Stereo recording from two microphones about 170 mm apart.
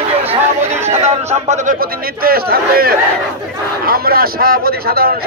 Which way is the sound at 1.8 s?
60° right (ahead or behind).